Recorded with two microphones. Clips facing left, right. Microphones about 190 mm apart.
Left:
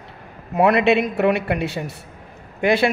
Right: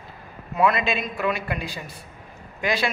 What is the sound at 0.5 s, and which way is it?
Speech, 65° left (ahead or behind).